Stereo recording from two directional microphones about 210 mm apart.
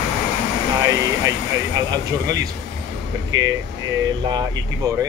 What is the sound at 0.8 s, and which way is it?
Speech, 15° right (ahead or behind).